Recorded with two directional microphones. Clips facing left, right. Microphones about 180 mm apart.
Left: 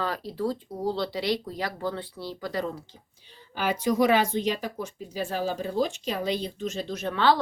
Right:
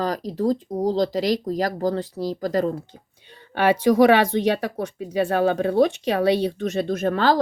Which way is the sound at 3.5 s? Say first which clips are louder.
Right 8 dB; 70° right (ahead or behind).